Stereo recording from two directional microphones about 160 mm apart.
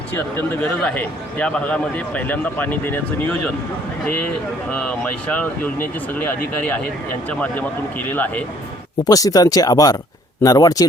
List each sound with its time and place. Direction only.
0.1 s a man's voice: 10° left (ahead or behind)
5.3 s a man's voice: 10° left (ahead or behind)
9.0 s speech: 20° left (ahead or behind)